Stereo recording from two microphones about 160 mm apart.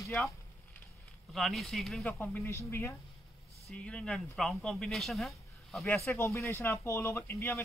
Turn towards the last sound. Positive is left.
turn(degrees=15)  # may be behind; listen again after turning